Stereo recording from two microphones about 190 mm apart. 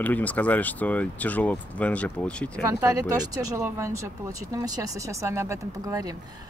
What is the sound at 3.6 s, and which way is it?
Speech, 15° right (ahead or behind).